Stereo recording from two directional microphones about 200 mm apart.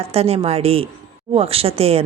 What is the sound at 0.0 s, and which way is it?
Speech, 30° right (ahead or behind).